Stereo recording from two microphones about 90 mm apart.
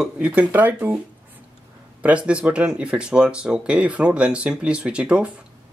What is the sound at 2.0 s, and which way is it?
Speech, 15° right (ahead or behind).